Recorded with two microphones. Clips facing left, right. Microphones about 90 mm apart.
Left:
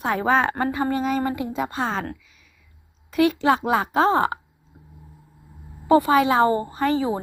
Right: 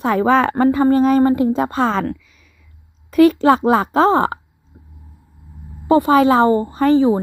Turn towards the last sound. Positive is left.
turn(degrees=-30)  # may be behind; listen again after turning